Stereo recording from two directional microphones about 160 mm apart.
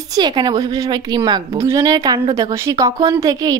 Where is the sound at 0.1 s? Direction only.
25° right (ahead or behind).